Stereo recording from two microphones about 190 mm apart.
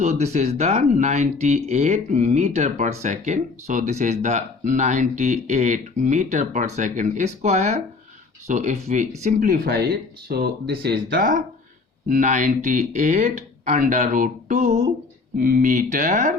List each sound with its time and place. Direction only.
0.0 s speech: 40° right (ahead or behind)
15.4 s speech: 45° right (ahead or behind)